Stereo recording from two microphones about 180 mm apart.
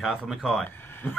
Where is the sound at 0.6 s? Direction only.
10° left (ahead or behind).